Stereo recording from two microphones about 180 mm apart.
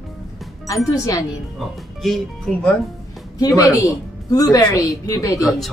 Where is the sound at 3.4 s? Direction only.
20° left (ahead or behind).